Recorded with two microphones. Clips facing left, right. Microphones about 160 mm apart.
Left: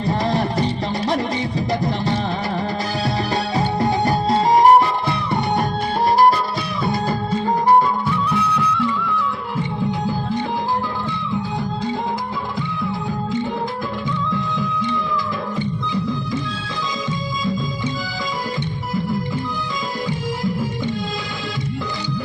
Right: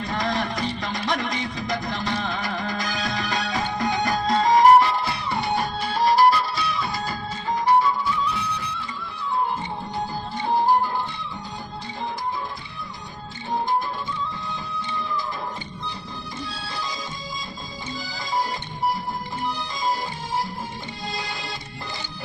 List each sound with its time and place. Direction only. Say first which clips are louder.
0.3 s music: left 6 dB; 30° left (ahead or behind)
3.5 s music: left 6 dB; 30° left (ahead or behind)
6.3 s music: left 2 dB; 50° left (ahead or behind); by 9.4 s 85° left